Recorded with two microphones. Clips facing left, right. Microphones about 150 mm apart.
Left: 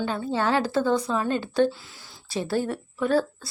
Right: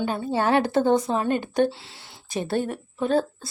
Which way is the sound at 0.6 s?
55° right (ahead or behind).